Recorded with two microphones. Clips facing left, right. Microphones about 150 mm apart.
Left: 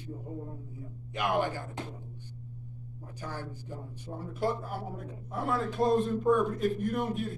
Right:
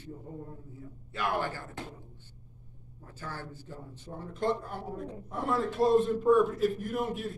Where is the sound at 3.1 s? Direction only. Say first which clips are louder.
Left 2 dB; 15° left (ahead or behind).